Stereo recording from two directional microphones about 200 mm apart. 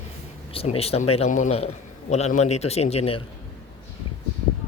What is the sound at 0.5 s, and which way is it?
A man's voice, 30° left (ahead or behind).